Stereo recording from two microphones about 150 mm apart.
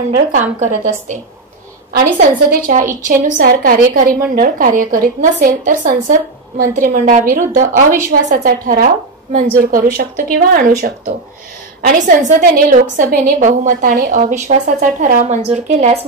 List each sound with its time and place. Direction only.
0.3 s a woman's voice: 55° right (ahead or behind)
1.9 s a woman's voice: 75° right (ahead or behind); by 16.0 s 50° right (ahead or behind)